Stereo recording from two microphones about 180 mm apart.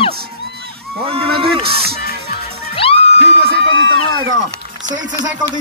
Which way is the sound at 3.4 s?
90° right.